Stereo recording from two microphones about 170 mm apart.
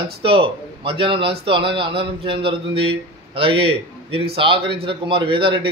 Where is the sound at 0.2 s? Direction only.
30° right (ahead or behind).